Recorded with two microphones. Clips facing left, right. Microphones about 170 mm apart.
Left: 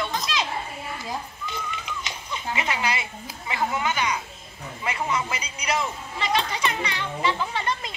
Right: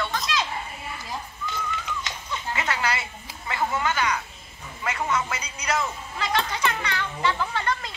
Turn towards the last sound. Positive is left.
turn(degrees=15)  # may be behind; listen again after turning